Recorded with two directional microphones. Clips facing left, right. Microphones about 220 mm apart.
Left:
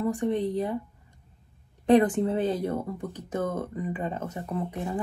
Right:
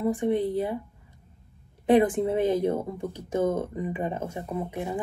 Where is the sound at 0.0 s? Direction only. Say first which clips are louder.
Right 2 dB; 10° right (ahead or behind).